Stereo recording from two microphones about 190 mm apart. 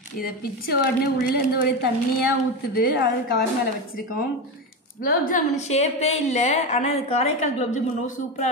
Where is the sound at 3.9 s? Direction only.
50° left (ahead or behind).